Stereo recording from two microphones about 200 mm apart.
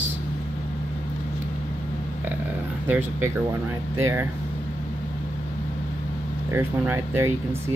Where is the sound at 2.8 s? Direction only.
10° right (ahead or behind).